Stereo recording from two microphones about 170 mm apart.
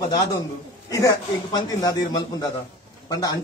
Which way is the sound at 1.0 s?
25° left (ahead or behind).